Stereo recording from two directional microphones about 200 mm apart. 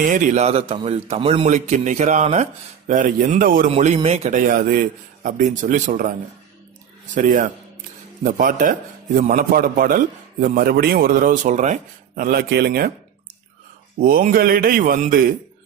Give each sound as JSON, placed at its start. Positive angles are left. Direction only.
{"t": 0.0, "sound": "a man's voice", "side_deg": -40}
{"t": 3.7, "sound": "a man's voice", "side_deg": -30}
{"t": 7.2, "sound": "a man's voice", "side_deg": -40}
{"t": 13.9, "sound": "a man's voice", "side_deg": -45}